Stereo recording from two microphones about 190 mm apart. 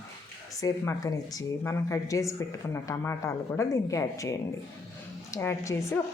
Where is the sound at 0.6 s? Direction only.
20° left (ahead or behind).